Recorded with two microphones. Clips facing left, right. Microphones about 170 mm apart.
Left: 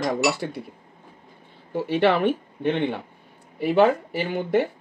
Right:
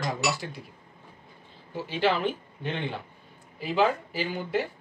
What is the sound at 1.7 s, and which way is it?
Speech, 65° left (ahead or behind).